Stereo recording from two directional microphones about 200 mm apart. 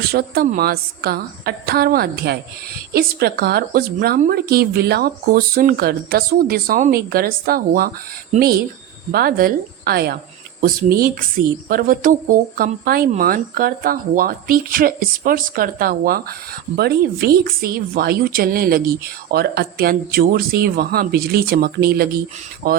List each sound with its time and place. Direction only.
0.1 s speech: 50° right (ahead or behind)